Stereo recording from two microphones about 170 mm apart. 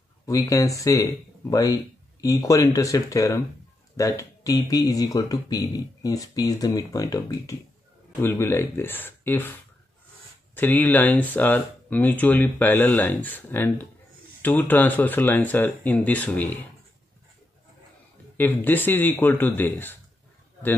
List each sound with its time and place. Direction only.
0.3 s speech: 20° left (ahead or behind)
10.5 s speech: 10° left (ahead or behind)
18.4 s speech: 10° left (ahead or behind)